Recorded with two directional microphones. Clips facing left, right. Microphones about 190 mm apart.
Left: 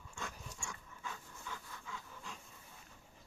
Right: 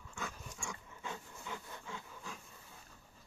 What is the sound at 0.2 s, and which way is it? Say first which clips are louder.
Dog: right 2 dB; 5° right (ahead or behind).